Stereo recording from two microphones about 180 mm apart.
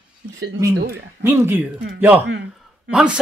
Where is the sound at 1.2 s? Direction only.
10° right (ahead or behind).